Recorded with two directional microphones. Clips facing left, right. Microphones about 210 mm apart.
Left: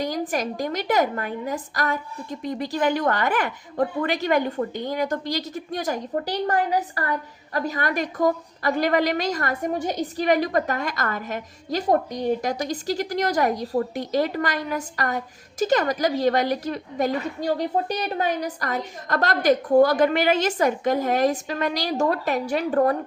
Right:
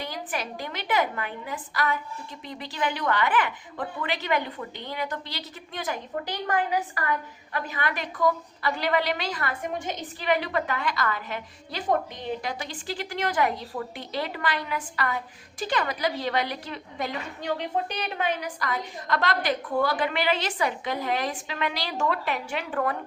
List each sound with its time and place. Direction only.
0.0 s a woman's voice: 40° left (ahead or behind)